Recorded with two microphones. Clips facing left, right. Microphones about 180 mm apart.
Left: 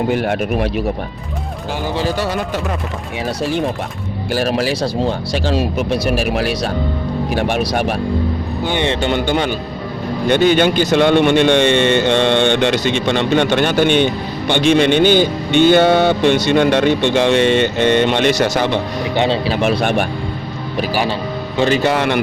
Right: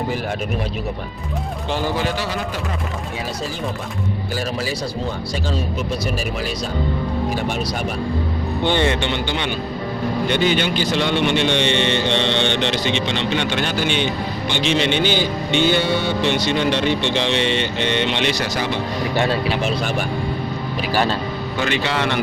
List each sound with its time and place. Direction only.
0.1 s speech: 65° left (ahead or behind)
4.3 s speech: 75° left (ahead or behind)
8.6 s speech: 15° left (ahead or behind)
9.0 s a man's voice: 45° left (ahead or behind)
18.5 s speech: 60° left (ahead or behind)
19.1 s speech: 20° left (ahead or behind)
19.6 s speech: 60° left (ahead or behind)
20.9 s speech: 10° left (ahead or behind)
21.6 s a man's voice: 40° left (ahead or behind)